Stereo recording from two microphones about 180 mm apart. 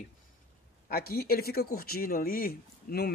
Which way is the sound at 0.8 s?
55° left (ahead or behind).